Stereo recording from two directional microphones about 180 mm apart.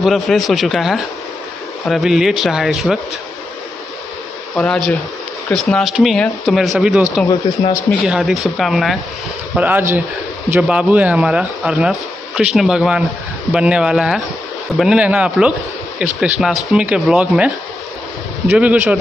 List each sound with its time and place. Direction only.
0.0 s speech: centre (ahead or behind)
4.6 s speech: centre (ahead or behind)
7.2 s speech: 20° left (ahead or behind)
8.1 s speech: centre (ahead or behind)
9.6 s speech: 10° right (ahead or behind)
16.6 s speech: 5° right (ahead or behind)
18.6 s speech: 10° right (ahead or behind)